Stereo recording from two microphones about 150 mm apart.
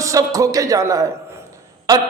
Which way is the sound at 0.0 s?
20° right (ahead or behind).